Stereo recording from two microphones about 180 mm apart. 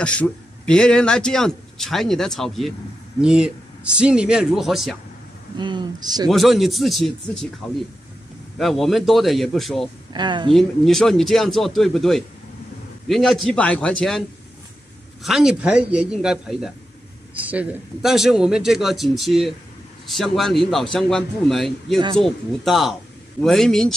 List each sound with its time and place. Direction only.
0.0 s a man's voice: 5° left (ahead or behind)
5.6 s speech: 25° right (ahead or behind)
6.2 s a man's voice: centre (ahead or behind)
10.1 s speech: 25° right (ahead or behind)
10.5 s a man's voice: centre (ahead or behind)
15.2 s a man's voice: 5° right (ahead or behind)